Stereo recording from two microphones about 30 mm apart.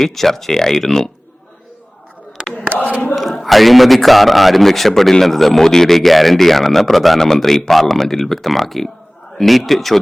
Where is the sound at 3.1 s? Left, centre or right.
Centre.